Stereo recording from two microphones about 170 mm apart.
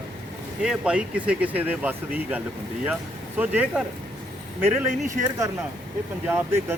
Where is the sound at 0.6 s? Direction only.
5° right (ahead or behind).